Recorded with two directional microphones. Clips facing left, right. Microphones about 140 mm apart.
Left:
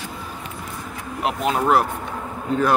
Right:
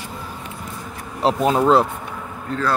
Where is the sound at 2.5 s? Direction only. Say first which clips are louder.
Left 3 dB; 15° left (ahead or behind).